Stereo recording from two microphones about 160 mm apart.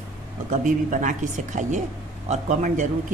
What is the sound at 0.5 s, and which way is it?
A man's voice, 50° right (ahead or behind).